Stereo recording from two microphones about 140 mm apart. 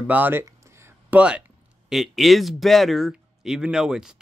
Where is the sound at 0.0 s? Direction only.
10° right (ahead or behind).